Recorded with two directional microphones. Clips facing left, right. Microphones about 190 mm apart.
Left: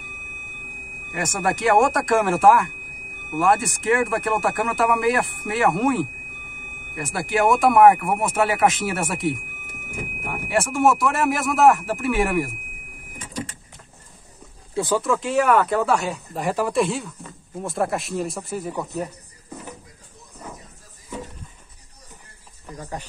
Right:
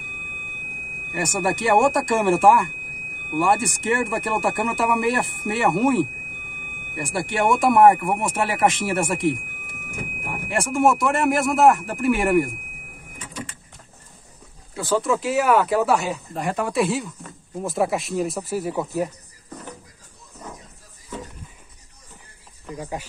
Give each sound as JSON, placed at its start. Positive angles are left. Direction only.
{"t": 1.1, "sound": "speech", "side_deg": 0}
{"t": 14.7, "sound": "a sound", "side_deg": 20}
{"t": 15.0, "sound": "speech", "side_deg": -5}
{"t": 22.8, "sound": "speech", "side_deg": -10}